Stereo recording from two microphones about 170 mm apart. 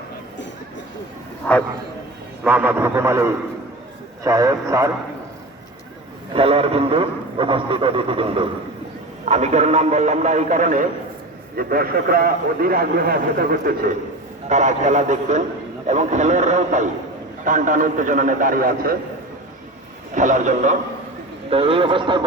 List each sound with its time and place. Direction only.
1.5 s speech: 10° left (ahead or behind)
2.4 s a man's voice: 10° right (ahead or behind)
6.3 s speech: 35° right (ahead or behind)
9.2 s a man's voice: 40° right (ahead or behind)
11.5 s a man's voice: 60° right (ahead or behind)
14.5 s a man's voice: 45° right (ahead or behind)
20.1 s a man's voice: 45° right (ahead or behind)
21.5 s speech: 35° right (ahead or behind)